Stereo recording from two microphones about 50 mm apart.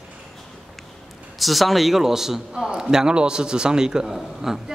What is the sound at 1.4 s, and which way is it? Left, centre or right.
A man's voice, centre.